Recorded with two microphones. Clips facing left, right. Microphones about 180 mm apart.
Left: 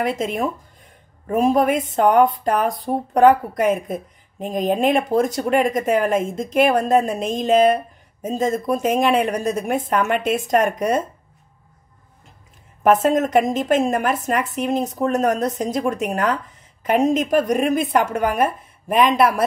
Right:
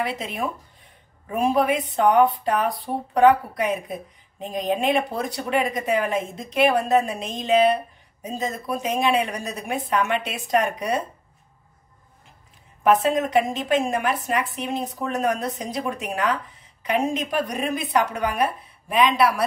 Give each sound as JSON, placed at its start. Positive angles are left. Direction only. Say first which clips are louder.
{"t": 0.0, "sound": "speech", "louder": "left 5 dB", "side_deg": 45}
{"t": 12.8, "sound": "speech", "louder": "left 3 dB", "side_deg": 45}